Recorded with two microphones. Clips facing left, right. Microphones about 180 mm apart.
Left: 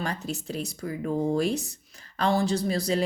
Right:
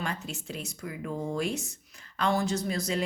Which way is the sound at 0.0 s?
35° left (ahead or behind).